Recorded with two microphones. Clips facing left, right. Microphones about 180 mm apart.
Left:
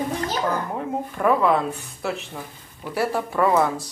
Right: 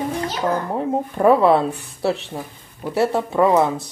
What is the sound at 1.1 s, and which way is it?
Speech, 35° right (ahead or behind).